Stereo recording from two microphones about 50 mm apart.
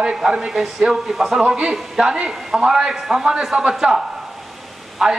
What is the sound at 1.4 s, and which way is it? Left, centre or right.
A man's voice, right.